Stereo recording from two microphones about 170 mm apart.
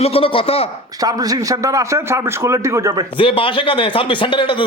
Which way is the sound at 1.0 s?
20° right (ahead or behind).